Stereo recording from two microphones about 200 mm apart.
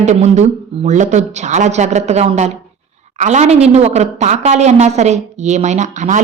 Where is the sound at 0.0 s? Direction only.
35° right (ahead or behind).